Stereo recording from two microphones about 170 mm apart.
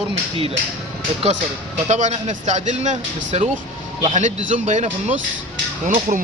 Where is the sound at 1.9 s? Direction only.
45° right (ahead or behind).